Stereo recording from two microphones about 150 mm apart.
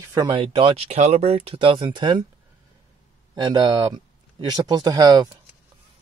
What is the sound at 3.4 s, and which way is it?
Speech, 25° right (ahead or behind).